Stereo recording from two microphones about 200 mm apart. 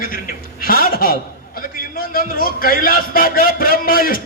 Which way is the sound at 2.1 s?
45° left (ahead or behind).